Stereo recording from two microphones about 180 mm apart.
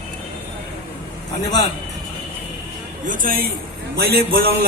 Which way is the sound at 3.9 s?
60° right (ahead or behind).